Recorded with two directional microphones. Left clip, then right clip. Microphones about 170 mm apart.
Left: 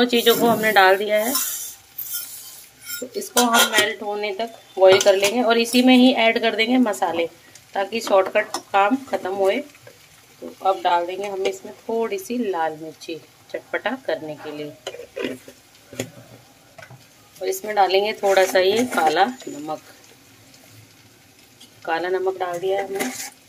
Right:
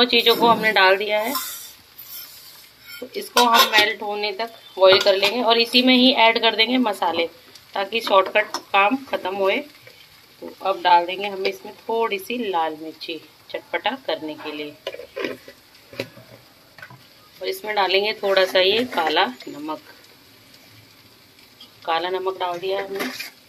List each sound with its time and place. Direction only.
0.0 s speech: 35° left (ahead or behind)
3.7 s speech: 20° left (ahead or behind)
17.6 s speech: 25° left (ahead or behind)
21.8 s speech: 30° left (ahead or behind)